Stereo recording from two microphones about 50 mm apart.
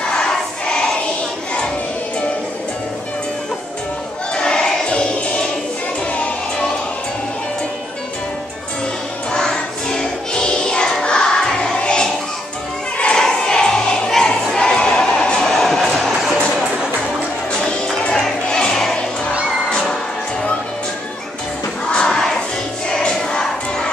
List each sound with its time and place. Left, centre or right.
0.2 s choir: centre
4.3 s a sound: centre
6.1 s music: left
9.3 s music: centre
12.9 s choir: left
13.2 s music: centre
14.5 s a sound: centre
15.8 s music: centre
18.0 s music: centre
21.9 s crowd: centre